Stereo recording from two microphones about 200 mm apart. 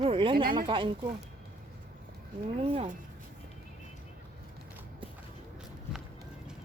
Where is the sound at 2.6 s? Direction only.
30° right (ahead or behind).